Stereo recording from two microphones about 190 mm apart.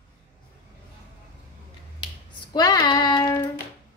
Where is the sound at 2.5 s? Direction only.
20° left (ahead or behind).